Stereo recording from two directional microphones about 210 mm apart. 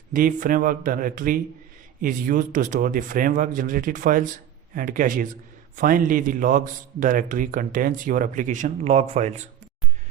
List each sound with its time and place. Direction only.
0.1 s a man's voice: 40° right (ahead or behind)